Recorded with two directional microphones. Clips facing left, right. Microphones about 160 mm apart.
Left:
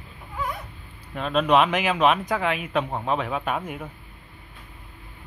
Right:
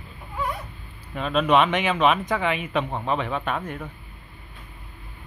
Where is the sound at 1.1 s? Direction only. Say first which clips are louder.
Even; centre (ahead or behind).